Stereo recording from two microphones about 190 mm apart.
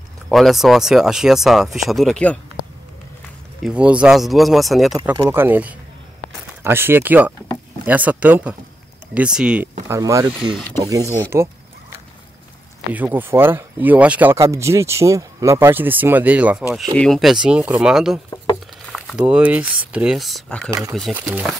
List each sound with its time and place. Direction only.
0.3 s speech: centre (ahead or behind)
3.6 s speech: 5° right (ahead or behind)
4.9 s speech: 15° right (ahead or behind)
9.8 s speech: 15° right (ahead or behind)
12.9 s speech: 10° right (ahead or behind)
21.1 s speech: 5° right (ahead or behind)